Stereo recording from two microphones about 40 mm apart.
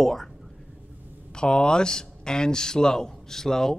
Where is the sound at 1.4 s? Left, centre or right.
Left.